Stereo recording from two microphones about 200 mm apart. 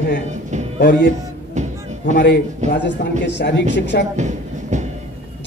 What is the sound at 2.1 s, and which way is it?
A man's voice, 60° left (ahead or behind).